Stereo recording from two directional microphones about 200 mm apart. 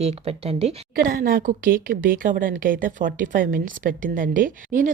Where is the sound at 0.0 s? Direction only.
30° right (ahead or behind).